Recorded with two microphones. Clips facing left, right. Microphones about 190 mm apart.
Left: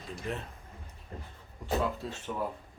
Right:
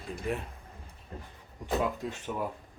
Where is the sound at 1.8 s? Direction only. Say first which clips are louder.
Right 1 dB; 15° right (ahead or behind).